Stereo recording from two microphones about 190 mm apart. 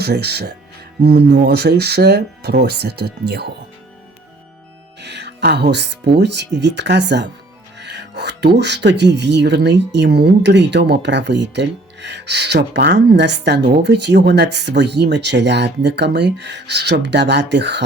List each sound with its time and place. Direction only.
0.0 s speech: 60° right (ahead or behind)
4.9 s speech: 65° right (ahead or behind)